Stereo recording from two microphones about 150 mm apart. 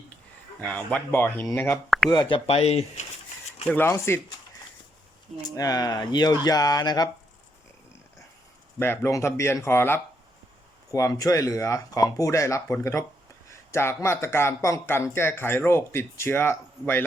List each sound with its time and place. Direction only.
0.6 s speech: 10° left (ahead or behind)
2.0 s speech: 30° left (ahead or behind)
2.5 s speech: 45° left (ahead or behind)
3.7 s speech: 15° left (ahead or behind)
5.4 s speech: 25° left (ahead or behind)
8.8 s speech: 15° left (ahead or behind)